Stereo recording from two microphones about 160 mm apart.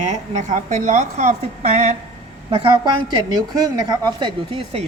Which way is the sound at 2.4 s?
30° right (ahead or behind).